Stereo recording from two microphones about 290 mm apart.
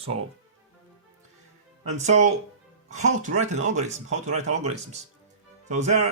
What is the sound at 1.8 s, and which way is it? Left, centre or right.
Speech, right.